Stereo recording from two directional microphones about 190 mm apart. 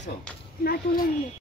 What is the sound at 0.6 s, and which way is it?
Speech, 50° left (ahead or behind).